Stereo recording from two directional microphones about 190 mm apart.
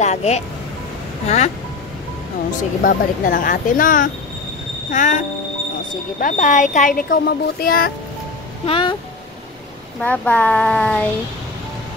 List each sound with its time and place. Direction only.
0.0 s speech: 35° left (ahead or behind)
2.8 s speech: 45° left (ahead or behind)
8.6 s speech: 25° left (ahead or behind)
9.9 s a child's voice: 5° left (ahead or behind)